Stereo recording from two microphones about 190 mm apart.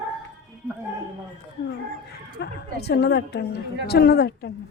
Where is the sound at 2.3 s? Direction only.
60° left (ahead or behind).